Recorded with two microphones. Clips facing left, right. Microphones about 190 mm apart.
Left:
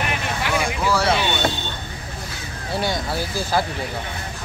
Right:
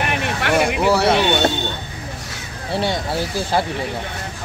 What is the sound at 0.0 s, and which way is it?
Vehicle, 65° right (ahead or behind).